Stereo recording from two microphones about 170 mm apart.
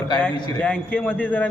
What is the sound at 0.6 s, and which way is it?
Speech, 10° left (ahead or behind).